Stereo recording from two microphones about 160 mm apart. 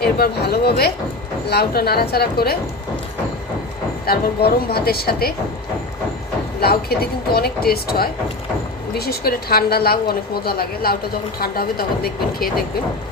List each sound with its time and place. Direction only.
0.0 s a woman's voice: 80° left
4.0 s a woman's voice: 75° left (ahead or behind)
6.6 s a woman's voice: 75° left (ahead or behind)